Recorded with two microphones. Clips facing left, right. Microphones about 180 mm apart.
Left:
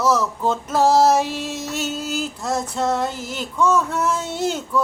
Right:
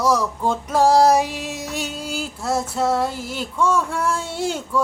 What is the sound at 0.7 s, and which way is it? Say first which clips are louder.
Female singing: right 1 dB; 5° left (ahead or behind).